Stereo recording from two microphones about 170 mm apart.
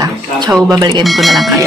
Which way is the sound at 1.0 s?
Centre (ahead or behind).